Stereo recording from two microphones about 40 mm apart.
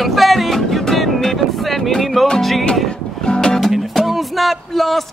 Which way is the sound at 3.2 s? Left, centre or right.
Centre.